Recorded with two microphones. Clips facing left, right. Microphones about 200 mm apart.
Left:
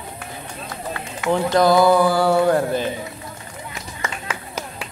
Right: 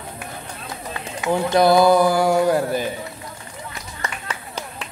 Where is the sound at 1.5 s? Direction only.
15° right (ahead or behind).